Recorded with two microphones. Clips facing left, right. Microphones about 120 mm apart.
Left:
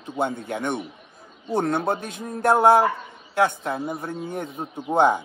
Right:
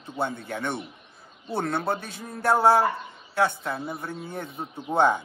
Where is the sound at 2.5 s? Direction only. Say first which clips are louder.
Left 3 dB; 20° left (ahead or behind).